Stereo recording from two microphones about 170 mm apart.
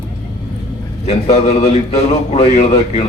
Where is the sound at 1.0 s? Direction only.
40° left (ahead or behind).